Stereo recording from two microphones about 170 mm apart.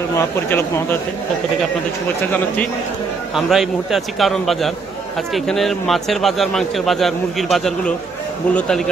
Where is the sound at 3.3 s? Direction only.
Centre (ahead or behind).